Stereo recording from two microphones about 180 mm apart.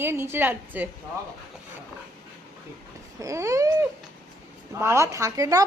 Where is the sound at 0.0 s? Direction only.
15° right (ahead or behind).